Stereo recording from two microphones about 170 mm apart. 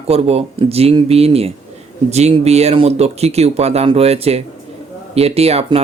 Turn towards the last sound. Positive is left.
turn(degrees=-35)  # may be behind; listen again after turning